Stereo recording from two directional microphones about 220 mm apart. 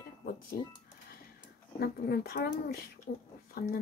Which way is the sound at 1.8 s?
45° left (ahead or behind).